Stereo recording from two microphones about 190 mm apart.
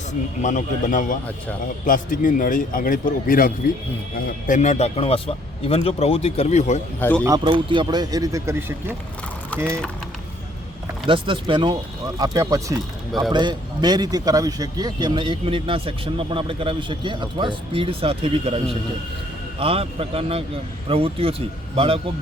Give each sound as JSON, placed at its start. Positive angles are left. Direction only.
{"t": 0.1, "sound": "a man's voice", "side_deg": 40}
{"t": 7.0, "sound": "speech", "side_deg": 10}
{"t": 7.3, "sound": "a man's voice", "side_deg": -20}
{"t": 11.0, "sound": "a man's voice", "side_deg": -30}